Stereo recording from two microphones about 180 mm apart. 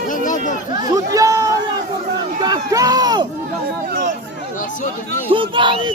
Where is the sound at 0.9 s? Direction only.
20° right (ahead or behind).